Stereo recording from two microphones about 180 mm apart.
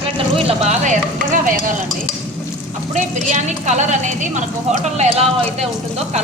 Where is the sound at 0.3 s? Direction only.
35° right (ahead or behind).